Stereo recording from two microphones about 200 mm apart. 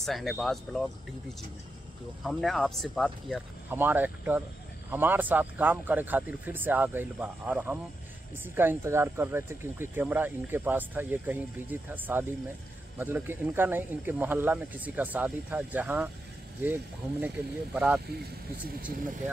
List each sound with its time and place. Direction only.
0.0 s speech: centre (ahead or behind)
2.2 s speech: centre (ahead or behind)
3.7 s speech: 10° right (ahead or behind)
18.8 s speech: 40° right (ahead or behind)